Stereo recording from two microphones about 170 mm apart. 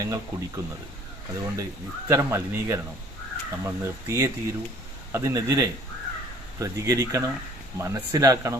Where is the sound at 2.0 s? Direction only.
15° right (ahead or behind).